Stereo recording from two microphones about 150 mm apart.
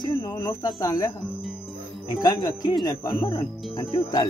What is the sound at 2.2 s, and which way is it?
Speech, 25° left (ahead or behind).